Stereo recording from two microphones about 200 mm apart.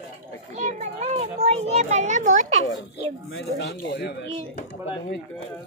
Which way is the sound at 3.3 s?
60° left (ahead or behind).